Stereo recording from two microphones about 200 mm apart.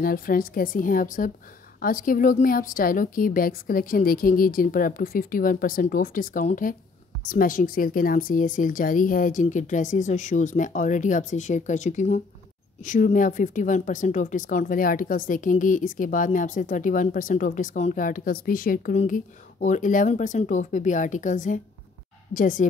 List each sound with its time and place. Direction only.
0.0 s a woman's voice: 45° left (ahead or behind)